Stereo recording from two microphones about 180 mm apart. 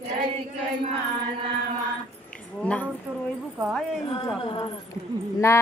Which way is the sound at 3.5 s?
5° right (ahead or behind).